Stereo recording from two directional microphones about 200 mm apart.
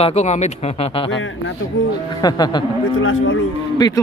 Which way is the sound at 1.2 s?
70° left (ahead or behind).